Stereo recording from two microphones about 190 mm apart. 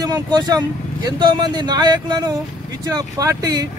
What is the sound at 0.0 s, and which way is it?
Speech, 20° right (ahead or behind).